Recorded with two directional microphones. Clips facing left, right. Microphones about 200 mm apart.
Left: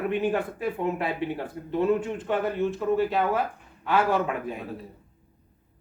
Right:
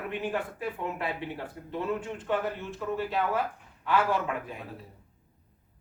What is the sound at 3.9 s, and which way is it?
Speech, 20° left (ahead or behind).